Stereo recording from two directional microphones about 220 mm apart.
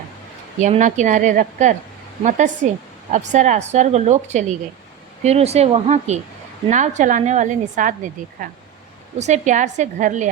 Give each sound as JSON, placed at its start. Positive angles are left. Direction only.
{"t": 0.6, "sound": "a woman's voice", "side_deg": -35}